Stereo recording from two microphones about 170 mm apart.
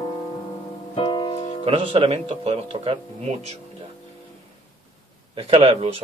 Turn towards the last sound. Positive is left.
turn(degrees=-35)  # may be behind; listen again after turning